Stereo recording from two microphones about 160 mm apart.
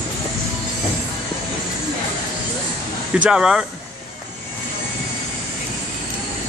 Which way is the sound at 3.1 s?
5° right (ahead or behind).